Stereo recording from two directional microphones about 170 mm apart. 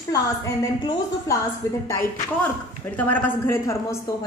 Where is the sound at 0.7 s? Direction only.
25° left (ahead or behind).